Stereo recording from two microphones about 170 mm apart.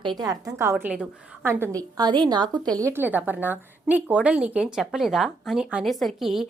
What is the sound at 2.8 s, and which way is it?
A woman's voice, 15° right (ahead or behind).